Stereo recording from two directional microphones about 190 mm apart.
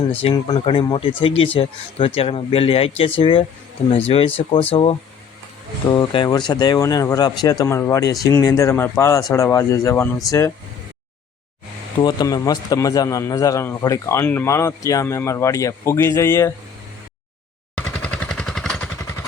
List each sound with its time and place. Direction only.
0.1 s a man's voice: 30° left (ahead or behind); by 10.5 s 15° left (ahead or behind)
11.9 s a man's voice: 20° left (ahead or behind)
17.7 s vehicle: 5° left (ahead or behind)